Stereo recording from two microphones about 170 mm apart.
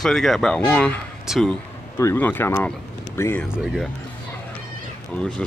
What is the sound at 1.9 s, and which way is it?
Speech, 15° left (ahead or behind).